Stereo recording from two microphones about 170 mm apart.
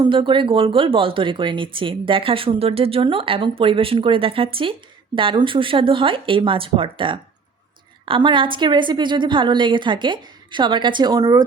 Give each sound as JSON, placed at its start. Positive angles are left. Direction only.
{"t": 0.0, "sound": "a woman's voice", "side_deg": -30}